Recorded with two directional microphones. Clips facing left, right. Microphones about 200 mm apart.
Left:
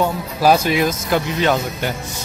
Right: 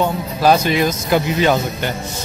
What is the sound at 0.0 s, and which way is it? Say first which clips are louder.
Speech: right 1 dB; 5° left (ahead or behind).